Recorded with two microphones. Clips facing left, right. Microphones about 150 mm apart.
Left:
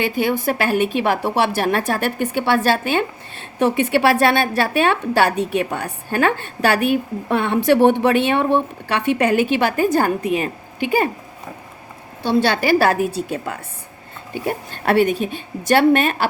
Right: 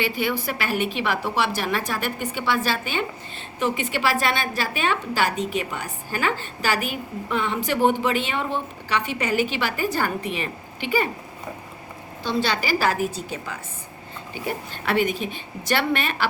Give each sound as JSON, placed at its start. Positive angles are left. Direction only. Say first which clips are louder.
{"t": 0.0, "sound": "a woman's voice", "louder": "left 5 dB", "side_deg": 50}
{"t": 12.2, "sound": "a woman's voice", "louder": "left 7 dB", "side_deg": 60}
{"t": 14.4, "sound": "a woman's voice", "louder": "left 7 dB", "side_deg": 50}